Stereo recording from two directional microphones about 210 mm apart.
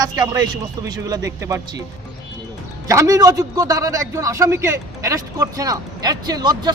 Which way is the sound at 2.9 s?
15° right (ahead or behind).